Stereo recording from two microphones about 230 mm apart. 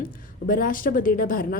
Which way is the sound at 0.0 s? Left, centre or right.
Left.